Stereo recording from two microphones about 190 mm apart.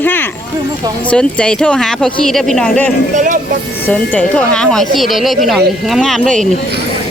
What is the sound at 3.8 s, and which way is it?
Speech, 10° left (ahead or behind).